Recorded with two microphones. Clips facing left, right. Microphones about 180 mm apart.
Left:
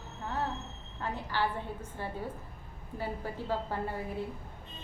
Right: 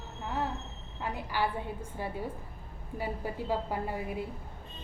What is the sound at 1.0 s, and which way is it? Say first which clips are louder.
A woman's voice: right 1 dB; 10° right (ahead or behind).